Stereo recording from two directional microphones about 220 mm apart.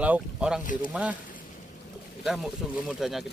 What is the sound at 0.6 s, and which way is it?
Speech, 35° left (ahead or behind).